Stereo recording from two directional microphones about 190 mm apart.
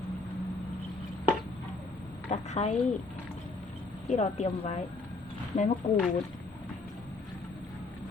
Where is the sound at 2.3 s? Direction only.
35° left (ahead or behind).